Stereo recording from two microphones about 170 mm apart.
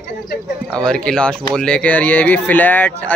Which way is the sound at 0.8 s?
5° left (ahead or behind).